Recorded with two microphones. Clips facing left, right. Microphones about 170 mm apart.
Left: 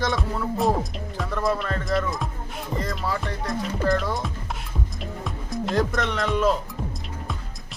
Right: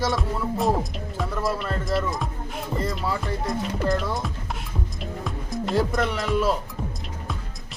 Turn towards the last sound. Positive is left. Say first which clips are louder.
# left 1 dB
turn(degrees=-5)  # may be behind; listen again after turning